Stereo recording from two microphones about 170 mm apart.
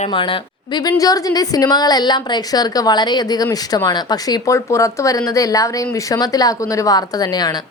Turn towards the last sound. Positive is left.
turn(degrees=25)  # may be behind; listen again after turning